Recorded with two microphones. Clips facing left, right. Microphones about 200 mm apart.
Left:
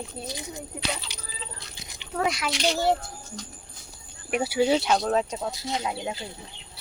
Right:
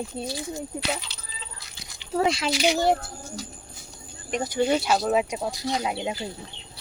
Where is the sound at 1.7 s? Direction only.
20° left (ahead or behind).